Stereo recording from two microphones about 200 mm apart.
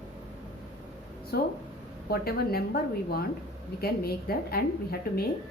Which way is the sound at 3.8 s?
50° left (ahead or behind).